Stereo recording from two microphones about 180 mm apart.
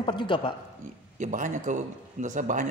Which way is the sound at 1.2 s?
45° right (ahead or behind).